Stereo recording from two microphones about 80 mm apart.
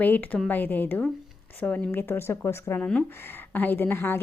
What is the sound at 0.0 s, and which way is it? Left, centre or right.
Speech, left.